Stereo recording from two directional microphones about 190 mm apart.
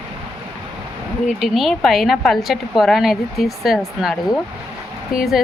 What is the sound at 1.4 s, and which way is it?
A woman's voice, centre (ahead or behind).